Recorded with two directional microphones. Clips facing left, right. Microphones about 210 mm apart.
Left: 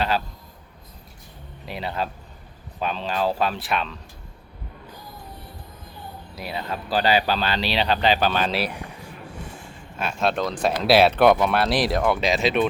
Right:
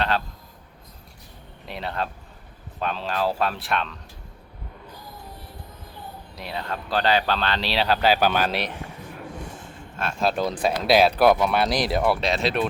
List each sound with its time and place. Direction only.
1.6 s speech: centre (ahead or behind)
6.3 s speech: 5° left (ahead or behind)
10.0 s speech: centre (ahead or behind)